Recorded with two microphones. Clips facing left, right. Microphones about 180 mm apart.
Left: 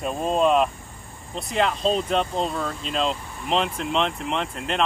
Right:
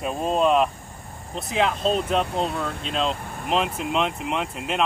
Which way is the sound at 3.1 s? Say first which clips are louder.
Right 2 dB; 55° right (ahead or behind).